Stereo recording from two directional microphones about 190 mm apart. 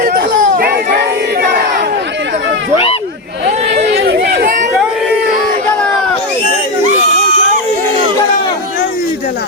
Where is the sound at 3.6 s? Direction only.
60° right (ahead or behind).